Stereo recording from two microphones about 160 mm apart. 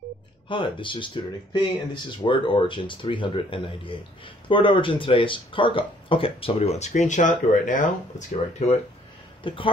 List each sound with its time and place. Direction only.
0.5 s speech: 30° left (ahead or behind)
9.5 s speech: 35° left (ahead or behind)